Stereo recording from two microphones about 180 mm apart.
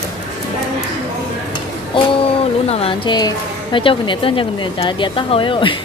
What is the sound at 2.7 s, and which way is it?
A woman's voice, 30° left (ahead or behind).